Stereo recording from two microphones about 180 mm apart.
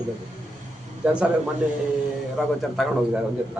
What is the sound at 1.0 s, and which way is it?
Speech, 5° right (ahead or behind).